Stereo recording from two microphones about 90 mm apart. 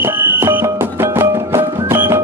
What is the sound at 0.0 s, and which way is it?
Music, 25° right (ahead or behind).